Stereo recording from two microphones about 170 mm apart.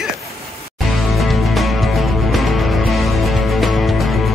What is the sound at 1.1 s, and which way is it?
Music, centre (ahead or behind).